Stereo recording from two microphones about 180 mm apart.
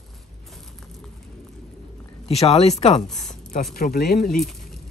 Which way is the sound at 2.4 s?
35° left (ahead or behind).